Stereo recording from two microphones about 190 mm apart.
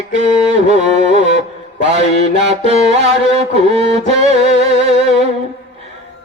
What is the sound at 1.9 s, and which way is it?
Mantra, 30° right (ahead or behind).